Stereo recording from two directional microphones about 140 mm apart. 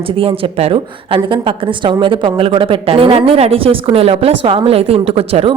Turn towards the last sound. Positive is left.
turn(degrees=-45)  # may be behind; listen again after turning